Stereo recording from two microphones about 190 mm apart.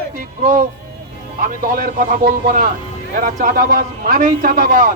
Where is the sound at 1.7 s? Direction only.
45° right (ahead or behind).